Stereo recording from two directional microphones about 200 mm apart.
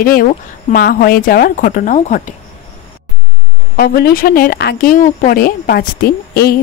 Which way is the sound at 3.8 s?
50° left (ahead or behind).